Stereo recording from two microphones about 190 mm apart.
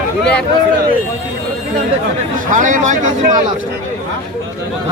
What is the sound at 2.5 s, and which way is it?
Speech, 40° right (ahead or behind).